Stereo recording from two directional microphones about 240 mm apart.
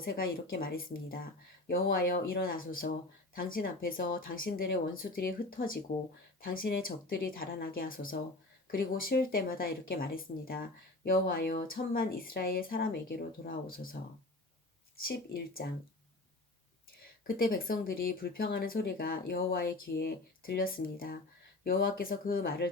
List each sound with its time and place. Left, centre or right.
0.0 s speech: left
17.2 s speech: left